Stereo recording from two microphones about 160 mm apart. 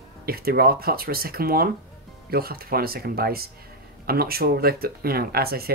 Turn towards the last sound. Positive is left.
turn(degrees=-70)  # may be behind; listen again after turning